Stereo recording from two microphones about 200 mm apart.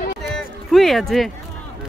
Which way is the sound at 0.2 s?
Centre (ahead or behind).